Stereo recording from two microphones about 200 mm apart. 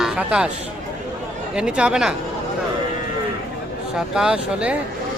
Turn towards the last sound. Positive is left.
turn(degrees=-5)  # may be behind; listen again after turning